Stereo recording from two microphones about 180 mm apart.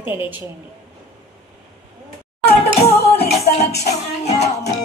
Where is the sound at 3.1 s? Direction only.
65° left (ahead or behind).